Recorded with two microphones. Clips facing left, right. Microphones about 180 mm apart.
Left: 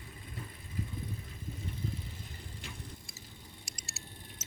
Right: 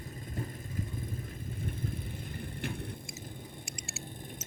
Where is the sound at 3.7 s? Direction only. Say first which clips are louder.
Right 7 dB; 35° left (ahead or behind).